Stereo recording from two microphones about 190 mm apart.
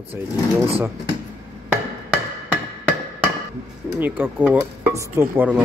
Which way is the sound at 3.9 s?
10° right (ahead or behind).